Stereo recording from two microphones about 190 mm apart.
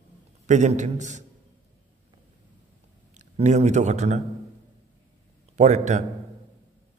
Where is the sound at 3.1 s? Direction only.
40° right (ahead or behind).